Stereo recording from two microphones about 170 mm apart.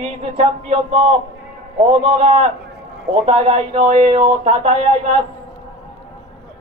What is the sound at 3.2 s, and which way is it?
Speech, 35° right (ahead or behind).